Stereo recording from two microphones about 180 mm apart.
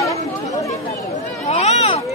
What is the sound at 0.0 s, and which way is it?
Chatter, 20° left (ahead or behind).